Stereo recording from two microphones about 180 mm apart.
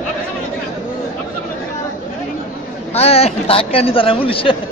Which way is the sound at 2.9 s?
35° left (ahead or behind).